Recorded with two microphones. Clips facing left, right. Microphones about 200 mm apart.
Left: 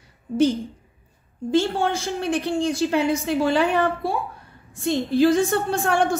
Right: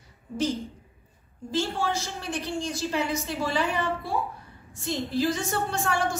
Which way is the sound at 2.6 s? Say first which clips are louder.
Left 8 dB; 60° left (ahead or behind).